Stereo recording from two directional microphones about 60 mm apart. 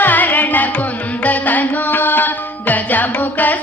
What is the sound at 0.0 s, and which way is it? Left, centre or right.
Music, left.